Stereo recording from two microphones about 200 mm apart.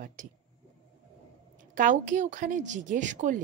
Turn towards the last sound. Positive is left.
turn(degrees=-40)  # may be behind; listen again after turning